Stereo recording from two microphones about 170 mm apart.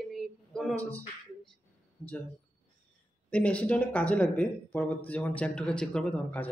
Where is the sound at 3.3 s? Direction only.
5° left (ahead or behind).